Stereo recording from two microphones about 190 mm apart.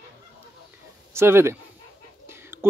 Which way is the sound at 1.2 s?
15° right (ahead or behind).